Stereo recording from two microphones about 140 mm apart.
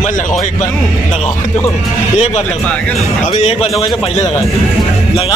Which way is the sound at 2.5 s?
10° left (ahead or behind).